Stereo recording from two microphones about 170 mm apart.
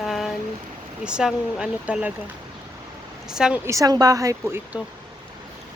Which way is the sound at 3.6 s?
20° right (ahead or behind).